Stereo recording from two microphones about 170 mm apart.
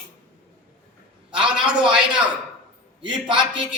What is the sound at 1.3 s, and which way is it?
Speech, 30° right (ahead or behind).